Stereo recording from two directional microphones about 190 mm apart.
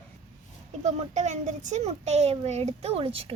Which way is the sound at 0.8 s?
40° right (ahead or behind).